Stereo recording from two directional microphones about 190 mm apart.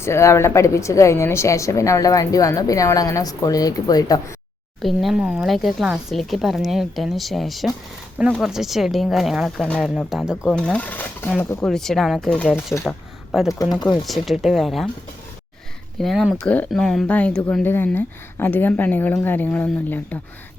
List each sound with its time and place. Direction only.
0.0 s a woman's voice: 15° left (ahead or behind)
4.8 s speech: centre (ahead or behind)
16.0 s a woman's voice: centre (ahead or behind)